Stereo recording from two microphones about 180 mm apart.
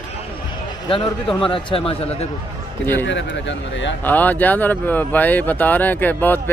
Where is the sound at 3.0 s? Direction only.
90° left.